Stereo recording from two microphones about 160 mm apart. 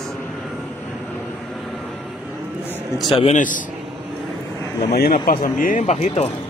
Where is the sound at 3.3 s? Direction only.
55° left (ahead or behind).